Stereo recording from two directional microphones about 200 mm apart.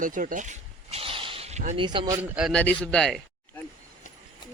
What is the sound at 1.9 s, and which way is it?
Speech, 25° right (ahead or behind).